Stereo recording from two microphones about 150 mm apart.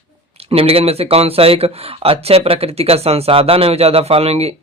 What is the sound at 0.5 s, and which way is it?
Speech, 40° right (ahead or behind).